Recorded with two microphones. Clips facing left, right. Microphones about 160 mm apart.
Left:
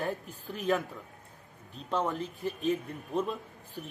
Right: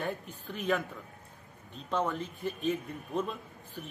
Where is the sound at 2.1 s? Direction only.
35° left (ahead or behind).